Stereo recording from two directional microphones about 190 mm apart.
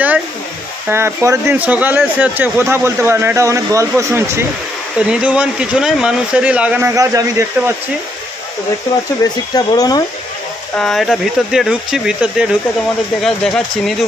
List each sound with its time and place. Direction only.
0.8 s speech: 15° right (ahead or behind)
7.0 s speech: 15° right (ahead or behind)
9.2 s speech: 20° left (ahead or behind)
10.8 s speech: centre (ahead or behind)